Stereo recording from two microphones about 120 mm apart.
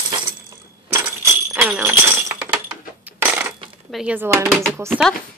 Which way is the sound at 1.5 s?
10° right (ahead or behind).